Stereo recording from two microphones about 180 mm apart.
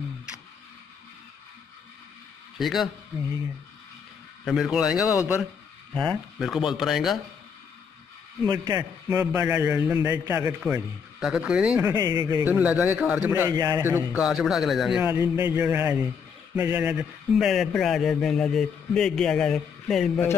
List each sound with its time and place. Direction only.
2.6 s speech: centre (ahead or behind)
4.5 s speech: centre (ahead or behind)
8.5 s a man's voice: 20° right (ahead or behind)
9.2 s a man's voice: 10° right (ahead or behind)
12.0 s a man's voice: 20° right (ahead or behind)
12.4 s a man's voice: 10° right (ahead or behind)
13.3 s a man's voice: 20° right (ahead or behind); by 20.2 s centre (ahead or behind)